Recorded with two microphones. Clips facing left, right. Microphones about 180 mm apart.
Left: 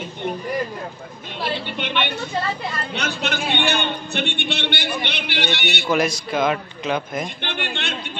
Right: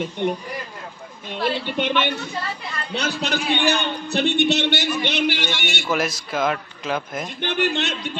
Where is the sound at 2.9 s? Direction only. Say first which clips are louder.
Right 4 dB; 35° right (ahead or behind).